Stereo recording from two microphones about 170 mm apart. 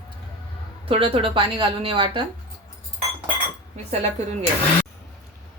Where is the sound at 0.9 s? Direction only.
35° right (ahead or behind).